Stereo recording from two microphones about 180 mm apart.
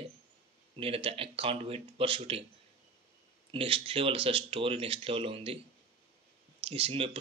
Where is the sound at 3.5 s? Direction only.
30° right (ahead or behind).